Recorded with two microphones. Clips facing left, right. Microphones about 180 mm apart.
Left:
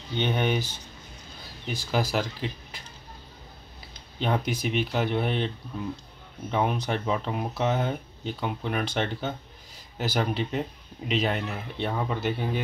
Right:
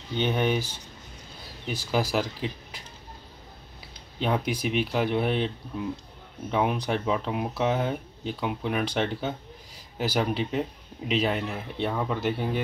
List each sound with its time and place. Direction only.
0.2 s speech: 5° right (ahead or behind)
1.7 s speech: 10° right (ahead or behind)
4.2 s speech: 5° right (ahead or behind)
6.5 s speech: 5° right (ahead or behind)